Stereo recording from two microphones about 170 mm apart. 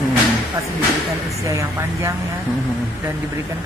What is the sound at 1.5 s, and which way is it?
Speech, 20° right (ahead or behind).